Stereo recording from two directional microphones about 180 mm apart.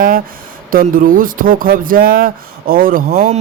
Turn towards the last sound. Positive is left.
turn(degrees=-50)  # may be behind; listen again after turning